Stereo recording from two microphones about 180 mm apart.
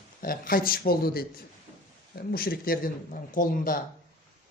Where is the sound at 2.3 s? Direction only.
55° left (ahead or behind).